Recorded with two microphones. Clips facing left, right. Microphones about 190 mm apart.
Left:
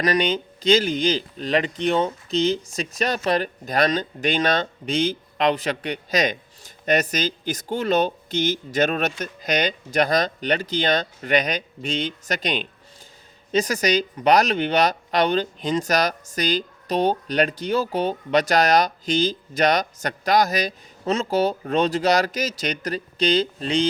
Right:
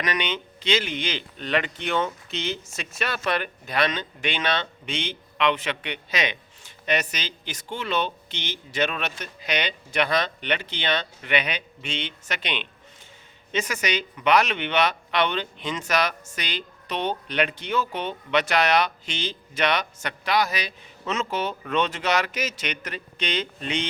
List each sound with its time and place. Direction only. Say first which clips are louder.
0.0 s speech: left 7 dB; 35° left (ahead or behind)